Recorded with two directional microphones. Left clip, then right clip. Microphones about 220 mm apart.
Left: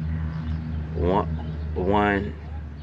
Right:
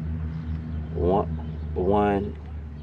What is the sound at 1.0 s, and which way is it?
Speech, 10° left (ahead or behind).